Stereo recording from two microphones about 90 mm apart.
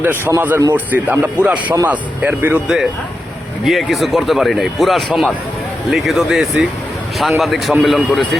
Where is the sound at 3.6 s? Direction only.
Centre (ahead or behind).